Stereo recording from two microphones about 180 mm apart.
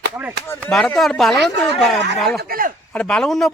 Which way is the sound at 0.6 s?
5° left (ahead or behind).